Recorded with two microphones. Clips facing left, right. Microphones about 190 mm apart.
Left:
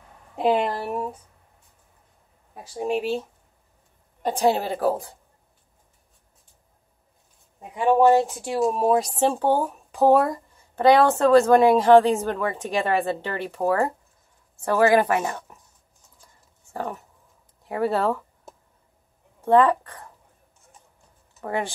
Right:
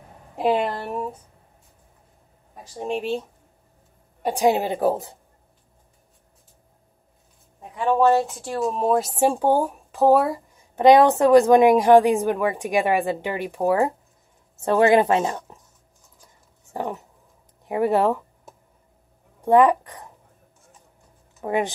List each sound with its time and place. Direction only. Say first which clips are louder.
0.4 s a woman's voice: even; centre (ahead or behind)
2.5 s speech: left 2 dB; 5° left (ahead or behind)
4.2 s a woman's voice: right 2 dB; 10° right (ahead or behind)
7.7 s speech: left 1 dB; 15° left (ahead or behind)
8.6 s a woman's voice: even; 5° left (ahead or behind)
9.1 s a woman's voice: right 2 dB; 10° right (ahead or behind)
9.8 s speech: even; centre (ahead or behind)
10.5 s a woman's voice: right 4 dB; 15° right (ahead or behind)
16.7 s a woman's voice: right 2 dB; 15° right (ahead or behind)
19.4 s a woman's voice: right 2 dB; 15° right (ahead or behind)
21.4 s speech: right 4 dB; 20° right (ahead or behind)